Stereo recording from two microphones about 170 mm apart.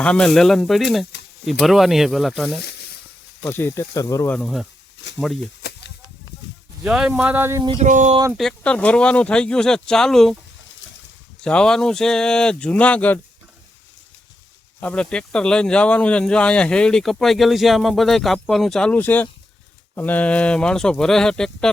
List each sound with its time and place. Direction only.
0.0 s speech: 5° left (ahead or behind)
2.6 s a sound: 75° left (ahead or behind)
3.4 s speech: 15° left (ahead or behind)
4.4 s speech: centre (ahead or behind)
5.4 s a sound: 85° left
6.8 s speech: 5° right (ahead or behind)
7.8 s speech: 45° right (ahead or behind)
8.4 s speech: 5° left (ahead or behind)
11.4 s speech: 5° left (ahead or behind)
14.8 s speech: 5° left (ahead or behind)